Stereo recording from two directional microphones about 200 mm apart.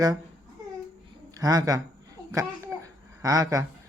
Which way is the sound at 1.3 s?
15° right (ahead or behind).